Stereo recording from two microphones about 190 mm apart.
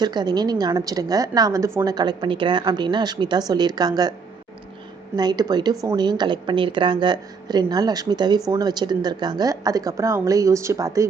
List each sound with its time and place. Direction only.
0.0 s a woman's voice: 20° right (ahead or behind)
5.1 s a woman's voice: 20° right (ahead or behind)